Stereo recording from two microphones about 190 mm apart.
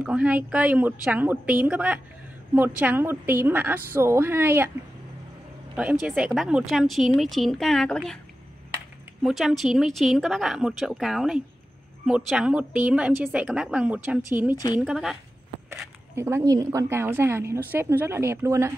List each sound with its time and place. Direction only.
0.0 s a woman's voice: 5° right (ahead or behind)
5.8 s a woman's voice: 5° right (ahead or behind)
9.2 s a woman's voice: centre (ahead or behind)
14.5 s a woman's voice: 20° left (ahead or behind)
14.8 s a woman's voice: 5° right (ahead or behind)
16.2 s a woman's voice: 15° right (ahead or behind)